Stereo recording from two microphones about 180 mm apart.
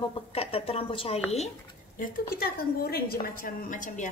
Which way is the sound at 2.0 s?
55° left (ahead or behind).